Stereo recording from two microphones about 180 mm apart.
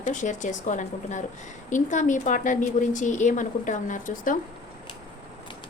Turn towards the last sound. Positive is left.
turn(degrees=45)  # may be behind; listen again after turning